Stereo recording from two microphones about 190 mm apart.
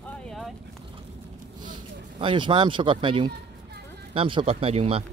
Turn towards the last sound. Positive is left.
turn(degrees=-30)  # may be behind; listen again after turning